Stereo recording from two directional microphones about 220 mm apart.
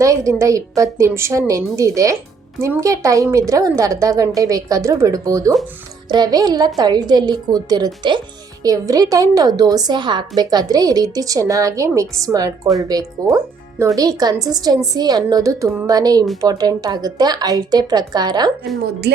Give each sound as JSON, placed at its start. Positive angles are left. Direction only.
{"t": 0.0, "sound": "a woman's voice", "side_deg": -15}
{"t": 19.1, "sound": "speech", "side_deg": -50}